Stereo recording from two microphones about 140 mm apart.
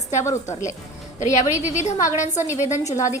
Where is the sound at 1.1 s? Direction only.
60° left (ahead or behind).